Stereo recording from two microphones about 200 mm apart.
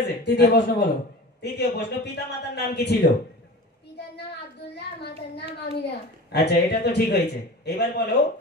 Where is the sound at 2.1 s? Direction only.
55° left (ahead or behind).